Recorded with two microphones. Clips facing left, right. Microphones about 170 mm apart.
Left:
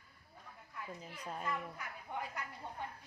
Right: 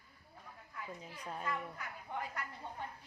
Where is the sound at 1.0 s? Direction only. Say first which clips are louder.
Even; centre (ahead or behind).